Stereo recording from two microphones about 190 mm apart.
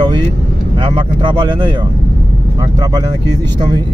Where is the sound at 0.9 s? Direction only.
25° right (ahead or behind).